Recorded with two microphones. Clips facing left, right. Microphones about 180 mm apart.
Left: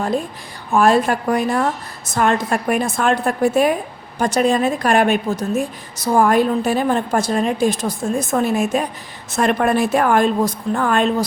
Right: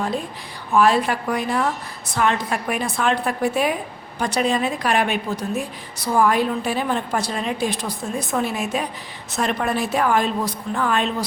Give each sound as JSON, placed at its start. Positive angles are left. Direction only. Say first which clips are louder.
{"t": 0.7, "sound": "a woman's voice", "louder": "left 3 dB", "side_deg": 45}